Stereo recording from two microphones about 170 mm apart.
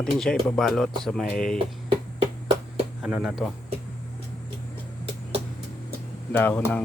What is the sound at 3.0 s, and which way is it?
Speech, 5° right (ahead or behind).